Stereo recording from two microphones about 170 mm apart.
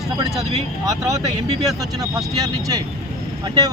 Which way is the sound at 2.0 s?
20° right (ahead or behind).